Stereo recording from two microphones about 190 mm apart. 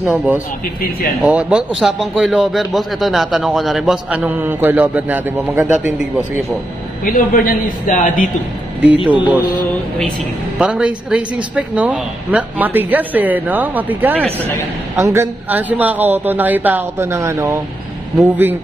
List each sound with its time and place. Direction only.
0.0 s a man's voice: 5° right (ahead or behind)
7.1 s a man's voice: 45° left (ahead or behind)
9.0 s speech: 5° right (ahead or behind)
10.6 s speech: 5° right (ahead or behind)